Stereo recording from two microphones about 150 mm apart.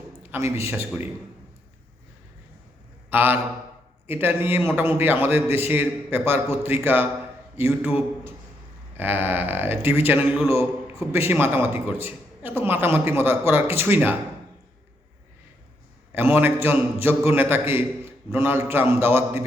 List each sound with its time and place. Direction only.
0.2 s a man's voice: 15° right (ahead or behind)
3.1 s a man's voice: 15° right (ahead or behind)
16.1 s a man's voice: 15° right (ahead or behind)